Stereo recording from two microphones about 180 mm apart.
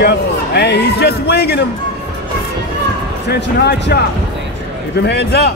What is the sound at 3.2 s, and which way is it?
Speech, 65° left (ahead or behind).